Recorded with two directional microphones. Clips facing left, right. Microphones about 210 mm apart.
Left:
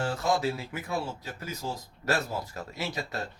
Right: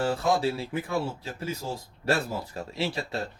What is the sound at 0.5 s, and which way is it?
Speech, 30° right (ahead or behind).